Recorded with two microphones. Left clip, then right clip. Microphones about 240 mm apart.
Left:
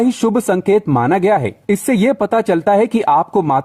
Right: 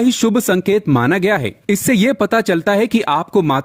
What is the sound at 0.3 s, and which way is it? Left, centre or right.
Speech, right.